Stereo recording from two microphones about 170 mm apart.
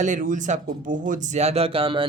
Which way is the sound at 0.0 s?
50° right (ahead or behind).